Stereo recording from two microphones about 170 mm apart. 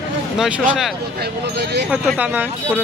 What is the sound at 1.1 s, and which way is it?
Speech, 70° right (ahead or behind).